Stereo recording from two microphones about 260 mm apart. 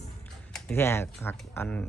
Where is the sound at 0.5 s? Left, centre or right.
Centre.